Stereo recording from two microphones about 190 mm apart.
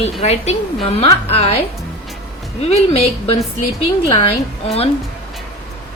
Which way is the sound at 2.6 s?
30° left (ahead or behind).